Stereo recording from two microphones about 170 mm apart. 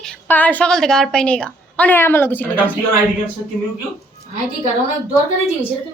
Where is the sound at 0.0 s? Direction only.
5° left (ahead or behind).